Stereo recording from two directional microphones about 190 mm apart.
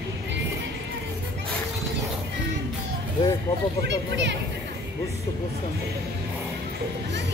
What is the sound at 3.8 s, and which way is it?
Speech, 65° right (ahead or behind).